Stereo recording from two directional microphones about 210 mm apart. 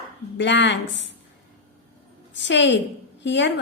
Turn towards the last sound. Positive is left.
turn(degrees=60)  # may be behind; listen again after turning